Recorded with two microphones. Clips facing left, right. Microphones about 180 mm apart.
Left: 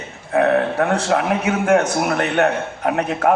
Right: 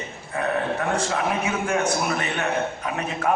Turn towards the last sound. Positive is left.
turn(degrees=65)  # may be behind; listen again after turning